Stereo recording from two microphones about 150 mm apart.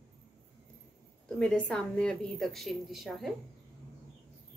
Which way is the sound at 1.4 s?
5° left (ahead or behind).